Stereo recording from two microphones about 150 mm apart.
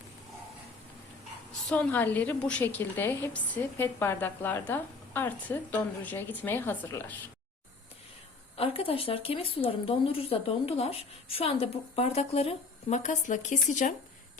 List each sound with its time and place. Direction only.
1.7 s a woman's voice: 10° left (ahead or behind)
8.5 s speech: 40° left (ahead or behind); by 13.9 s 55° left (ahead or behind)